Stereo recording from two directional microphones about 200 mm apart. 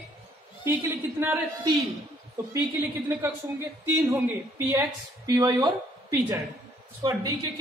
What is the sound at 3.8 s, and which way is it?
A man's voice, 10° right (ahead or behind).